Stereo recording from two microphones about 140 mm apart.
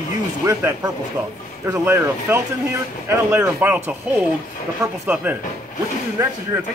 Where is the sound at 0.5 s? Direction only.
20° right (ahead or behind).